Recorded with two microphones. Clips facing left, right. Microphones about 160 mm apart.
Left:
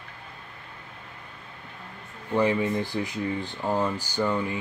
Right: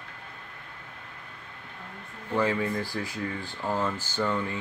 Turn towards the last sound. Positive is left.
turn(degrees=15)  # may be behind; listen again after turning